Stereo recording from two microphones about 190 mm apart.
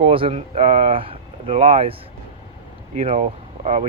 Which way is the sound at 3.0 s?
35° right (ahead or behind).